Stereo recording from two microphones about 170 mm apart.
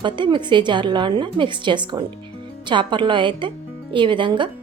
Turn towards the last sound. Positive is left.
turn(degrees=-30)  # may be behind; listen again after turning